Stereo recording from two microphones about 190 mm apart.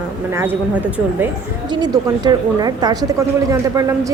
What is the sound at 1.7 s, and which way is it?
Speech, 20° right (ahead or behind).